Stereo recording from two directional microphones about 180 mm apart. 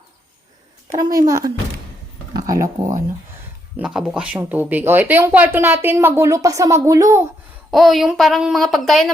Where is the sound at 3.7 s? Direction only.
5° right (ahead or behind).